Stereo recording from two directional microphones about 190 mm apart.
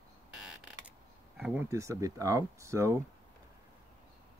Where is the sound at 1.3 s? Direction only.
5° right (ahead or behind).